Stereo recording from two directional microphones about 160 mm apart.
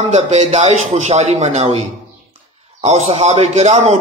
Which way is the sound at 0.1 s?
40° right (ahead or behind).